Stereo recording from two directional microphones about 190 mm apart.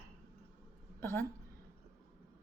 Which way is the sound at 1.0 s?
10° left (ahead or behind).